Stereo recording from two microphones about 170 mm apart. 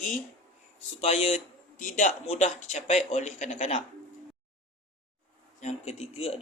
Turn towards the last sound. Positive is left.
turn(degrees=35)  # may be behind; listen again after turning